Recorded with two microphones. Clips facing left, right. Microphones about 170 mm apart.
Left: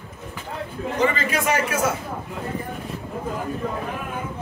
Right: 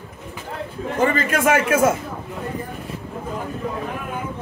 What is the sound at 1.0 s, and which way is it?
Speech, 50° right (ahead or behind).